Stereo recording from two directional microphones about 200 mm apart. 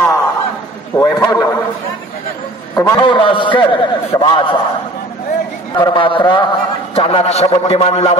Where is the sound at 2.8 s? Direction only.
20° left (ahead or behind).